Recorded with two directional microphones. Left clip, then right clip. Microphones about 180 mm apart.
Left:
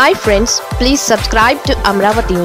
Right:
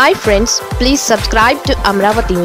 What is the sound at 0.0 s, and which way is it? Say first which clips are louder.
Speech: even; centre (ahead or behind).